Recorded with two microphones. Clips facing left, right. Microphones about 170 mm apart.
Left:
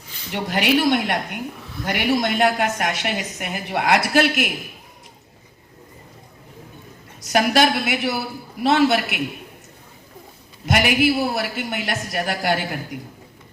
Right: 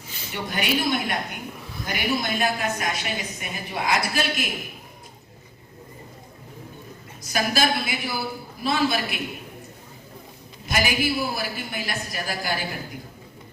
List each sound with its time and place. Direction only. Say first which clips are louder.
0.3 s a woman's voice: left 6 dB; 75° left (ahead or behind)
7.3 s a woman's voice: left 6 dB; 75° left (ahead or behind)
10.7 s a woman's voice: left 6 dB; 70° left (ahead or behind)